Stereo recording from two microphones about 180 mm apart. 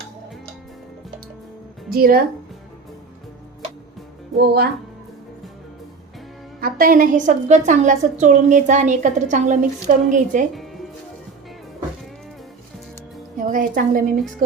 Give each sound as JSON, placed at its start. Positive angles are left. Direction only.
{"t": 1.9, "sound": "speech", "side_deg": -55}
{"t": 4.4, "sound": "speech", "side_deg": -65}
{"t": 6.6, "sound": "a woman's voice", "side_deg": -55}
{"t": 13.4, "sound": "a woman's voice", "side_deg": -50}